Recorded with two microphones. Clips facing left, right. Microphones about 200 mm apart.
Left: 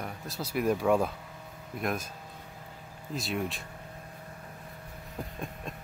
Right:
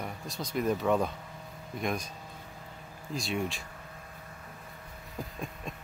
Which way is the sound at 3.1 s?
Centre (ahead or behind).